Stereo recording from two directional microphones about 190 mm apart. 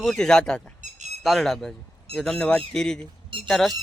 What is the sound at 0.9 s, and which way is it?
Squawk, 40° right (ahead or behind).